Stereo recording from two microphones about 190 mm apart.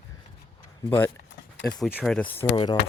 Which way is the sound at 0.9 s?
10° left (ahead or behind).